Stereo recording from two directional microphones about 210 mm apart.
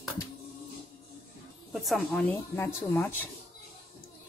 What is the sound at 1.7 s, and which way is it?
Speech, centre (ahead or behind).